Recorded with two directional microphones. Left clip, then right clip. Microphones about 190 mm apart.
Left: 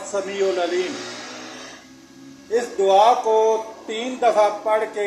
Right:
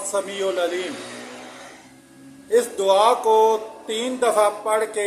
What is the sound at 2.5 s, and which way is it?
Speech, 15° right (ahead or behind).